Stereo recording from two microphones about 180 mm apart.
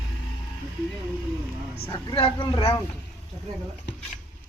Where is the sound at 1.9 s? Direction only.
30° left (ahead or behind).